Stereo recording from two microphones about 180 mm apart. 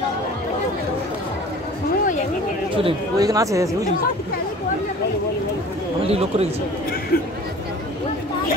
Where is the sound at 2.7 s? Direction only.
30° right (ahead or behind).